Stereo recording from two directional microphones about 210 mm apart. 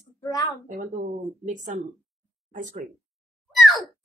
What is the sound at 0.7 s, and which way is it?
Speech, 35° right (ahead or behind).